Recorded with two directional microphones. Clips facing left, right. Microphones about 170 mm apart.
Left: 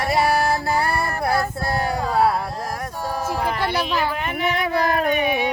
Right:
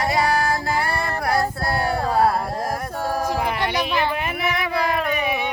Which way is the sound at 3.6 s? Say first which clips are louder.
Left 1 dB; 10° right (ahead or behind).